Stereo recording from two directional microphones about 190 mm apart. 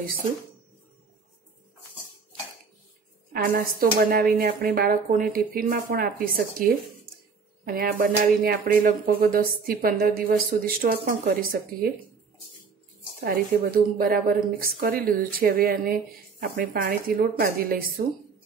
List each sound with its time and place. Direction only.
3.3 s a woman's voice: 50° right (ahead or behind)
13.2 s a woman's voice: 50° right (ahead or behind)